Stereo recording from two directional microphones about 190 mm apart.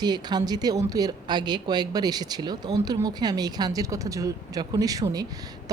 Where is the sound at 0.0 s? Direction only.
20° right (ahead or behind).